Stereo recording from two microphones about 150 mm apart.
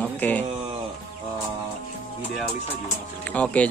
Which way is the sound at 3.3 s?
10° left (ahead or behind).